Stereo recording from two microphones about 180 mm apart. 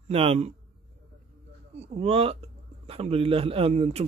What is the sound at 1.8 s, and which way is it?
A man's voice, 35° right (ahead or behind).